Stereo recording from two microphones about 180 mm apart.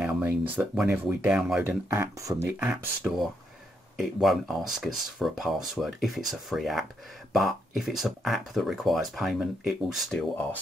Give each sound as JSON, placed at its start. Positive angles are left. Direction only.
{"t": 0.0, "sound": "a sound", "side_deg": -10}
{"t": 0.6, "sound": "speech", "side_deg": -5}
{"t": 1.9, "sound": "speech", "side_deg": -15}